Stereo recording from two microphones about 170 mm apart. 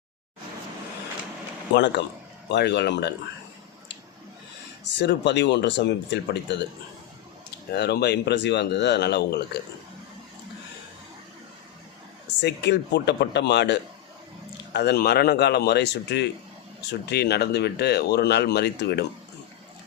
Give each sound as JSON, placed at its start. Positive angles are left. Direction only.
{"t": 1.7, "sound": "speech", "side_deg": 80}
{"t": 4.9, "sound": "speech", "side_deg": 90}
{"t": 7.7, "sound": "speech", "side_deg": 70}
{"t": 12.4, "sound": "speech", "side_deg": 85}